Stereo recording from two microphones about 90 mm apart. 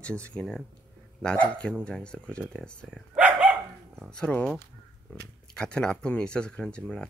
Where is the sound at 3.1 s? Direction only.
15° right (ahead or behind).